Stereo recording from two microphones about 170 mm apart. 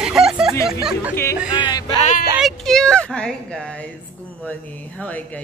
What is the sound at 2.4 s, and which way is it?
A woman's voice, centre (ahead or behind).